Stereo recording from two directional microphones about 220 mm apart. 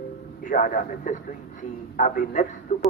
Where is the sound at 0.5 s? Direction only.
35° left (ahead or behind).